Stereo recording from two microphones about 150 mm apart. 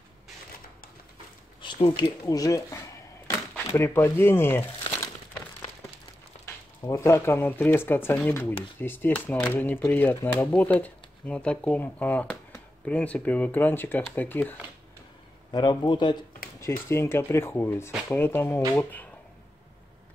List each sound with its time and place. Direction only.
1.6 s a sound: 30° left (ahead or behind)
2.2 s a man's voice: 20° left (ahead or behind)
6.4 s speech: 20° left (ahead or behind)
15.5 s a man's voice: 25° left (ahead or behind)
16.5 s speech: 15° left (ahead or behind)